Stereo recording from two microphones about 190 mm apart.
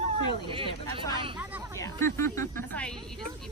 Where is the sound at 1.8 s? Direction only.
15° left (ahead or behind).